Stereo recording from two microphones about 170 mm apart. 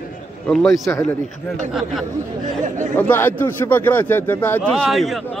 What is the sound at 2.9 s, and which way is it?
Speech, 10° left (ahead or behind).